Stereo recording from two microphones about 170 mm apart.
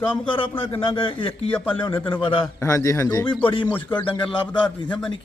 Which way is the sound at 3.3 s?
30° left (ahead or behind).